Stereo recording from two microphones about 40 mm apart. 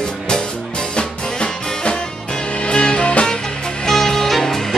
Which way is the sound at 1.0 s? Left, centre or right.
Left.